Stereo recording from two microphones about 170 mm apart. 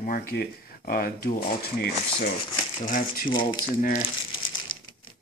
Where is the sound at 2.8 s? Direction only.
55° left (ahead or behind).